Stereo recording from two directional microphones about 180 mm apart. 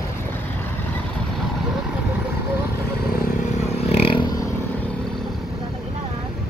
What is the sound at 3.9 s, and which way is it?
Vehicle, 30° left (ahead or behind).